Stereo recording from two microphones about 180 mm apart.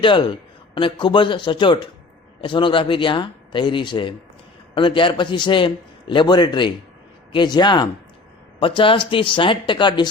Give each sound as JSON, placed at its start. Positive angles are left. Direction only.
{"t": 0.0, "sound": "a man's voice", "side_deg": 25}